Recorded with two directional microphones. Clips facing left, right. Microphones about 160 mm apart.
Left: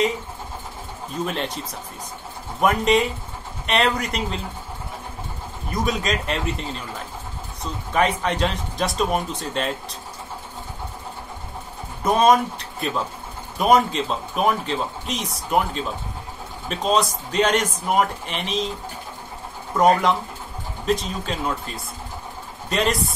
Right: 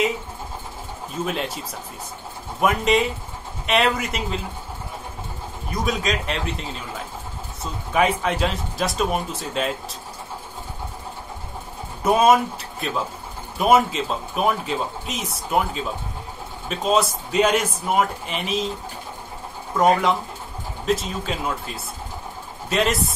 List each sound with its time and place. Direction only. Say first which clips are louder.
1.2 s speech: even; 5° right (ahead or behind)
2.6 s speech: left 1 dB; centre (ahead or behind)
5.7 s speech: even; centre (ahead or behind)
12.0 s speech: even; 5° right (ahead or behind)
19.7 s speech: left 1 dB; centre (ahead or behind)